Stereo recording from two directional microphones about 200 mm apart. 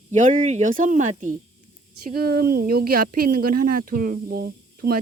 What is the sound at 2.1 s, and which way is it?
Speech, 50° right (ahead or behind).